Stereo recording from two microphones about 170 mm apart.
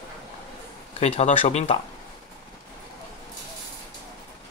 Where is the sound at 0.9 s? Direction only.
40° left (ahead or behind).